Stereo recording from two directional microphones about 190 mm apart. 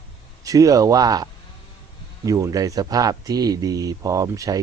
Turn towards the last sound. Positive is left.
turn(degrees=-15)  # may be behind; listen again after turning